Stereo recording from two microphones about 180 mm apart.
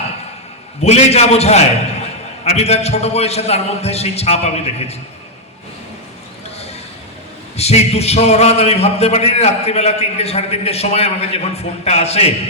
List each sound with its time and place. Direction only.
0.8 s a man's voice: 35° left (ahead or behind)
7.5 s a man's voice: 35° left (ahead or behind)